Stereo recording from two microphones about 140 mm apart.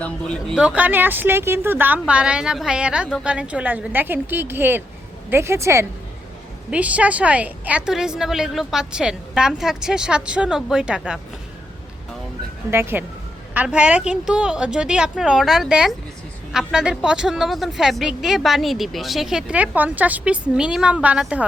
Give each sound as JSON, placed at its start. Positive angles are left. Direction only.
{"t": 0.5, "sound": "a woman's voice", "side_deg": -10}
{"t": 6.7, "sound": "speech", "side_deg": -10}
{"t": 12.7, "sound": "a woman's voice", "side_deg": -15}